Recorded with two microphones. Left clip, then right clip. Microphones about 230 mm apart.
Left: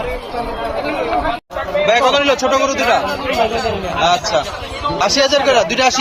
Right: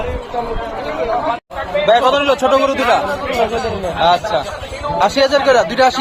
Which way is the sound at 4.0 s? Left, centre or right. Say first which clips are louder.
Right 1 dB; right.